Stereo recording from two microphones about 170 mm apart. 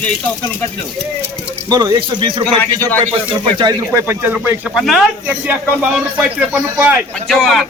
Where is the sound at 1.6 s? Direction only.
20° right (ahead or behind).